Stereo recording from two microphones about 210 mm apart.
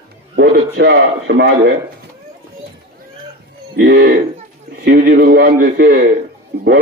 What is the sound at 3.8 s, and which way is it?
A man's voice, 50° right (ahead or behind).